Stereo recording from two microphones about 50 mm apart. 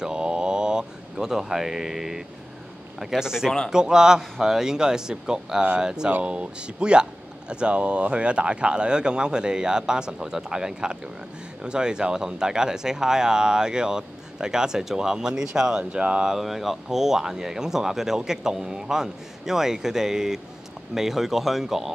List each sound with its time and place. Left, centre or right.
0.0 s a sound: centre
3.0 s speech: centre
16.3 s speech: centre